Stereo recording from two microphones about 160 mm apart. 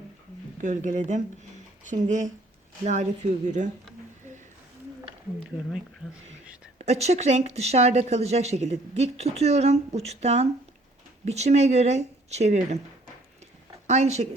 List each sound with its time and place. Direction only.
0.6 s speech: 50° right (ahead or behind)
6.7 s speech: 40° right (ahead or behind)
13.8 s speech: 45° right (ahead or behind)